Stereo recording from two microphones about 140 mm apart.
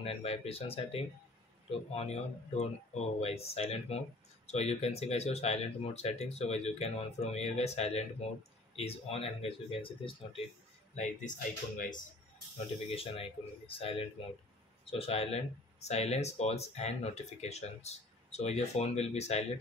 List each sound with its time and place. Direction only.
0.0 s speech: 45° left (ahead or behind)
11.0 s speech: 65° left (ahead or behind)
12.9 s speech: 45° left (ahead or behind)